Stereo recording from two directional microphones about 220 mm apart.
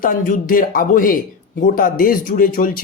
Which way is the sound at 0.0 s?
40° left (ahead or behind).